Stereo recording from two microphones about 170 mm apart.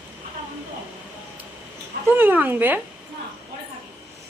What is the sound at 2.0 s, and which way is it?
Speech, 10° right (ahead or behind).